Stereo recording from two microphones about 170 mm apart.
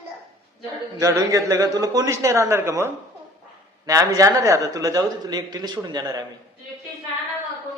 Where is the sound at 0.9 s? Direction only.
20° right (ahead or behind).